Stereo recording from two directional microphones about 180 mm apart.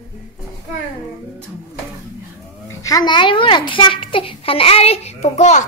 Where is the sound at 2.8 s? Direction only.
20° left (ahead or behind).